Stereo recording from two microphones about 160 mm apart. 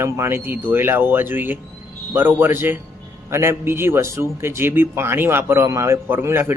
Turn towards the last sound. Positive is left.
turn(degrees=-15)  # may be behind; listen again after turning